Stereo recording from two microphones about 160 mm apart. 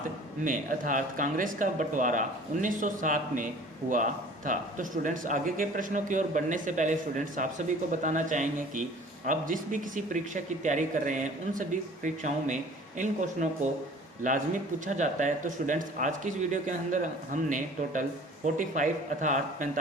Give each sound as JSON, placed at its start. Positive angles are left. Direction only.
{"t": 0.4, "sound": "a man's voice", "side_deg": -55}